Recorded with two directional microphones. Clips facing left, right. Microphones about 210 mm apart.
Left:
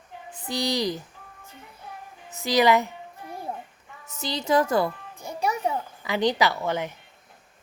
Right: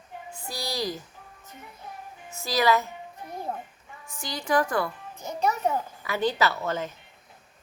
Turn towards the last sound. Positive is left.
turn(degrees=15)  # may be behind; listen again after turning